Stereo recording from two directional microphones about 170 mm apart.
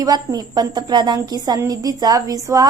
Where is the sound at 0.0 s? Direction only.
25° right (ahead or behind).